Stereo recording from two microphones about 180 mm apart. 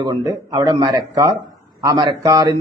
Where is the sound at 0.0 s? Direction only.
20° right (ahead or behind).